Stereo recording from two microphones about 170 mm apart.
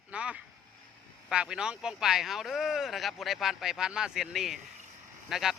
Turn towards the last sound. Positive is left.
turn(degrees=0)  # may be behind; listen again after turning